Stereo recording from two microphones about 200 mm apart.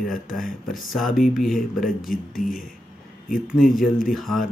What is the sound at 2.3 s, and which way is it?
Speech, 45° left (ahead or behind).